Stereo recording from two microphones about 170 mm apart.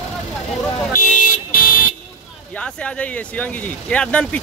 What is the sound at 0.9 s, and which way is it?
Car alarm, 55° left (ahead or behind).